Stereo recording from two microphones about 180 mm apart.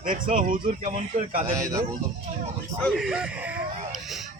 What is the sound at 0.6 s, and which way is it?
Speech, 35° right (ahead or behind).